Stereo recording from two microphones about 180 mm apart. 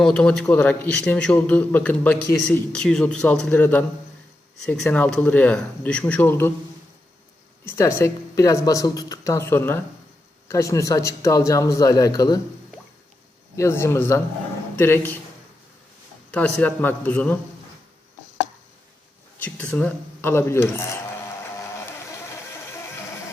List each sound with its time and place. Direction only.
0.0 s a man's voice: 5° left (ahead or behind)
7.6 s a man's voice: 15° left (ahead or behind)
13.6 s a man's voice: 15° left (ahead or behind)
16.3 s a man's voice: 5° left (ahead or behind)
19.4 s a man's voice: 10° left (ahead or behind)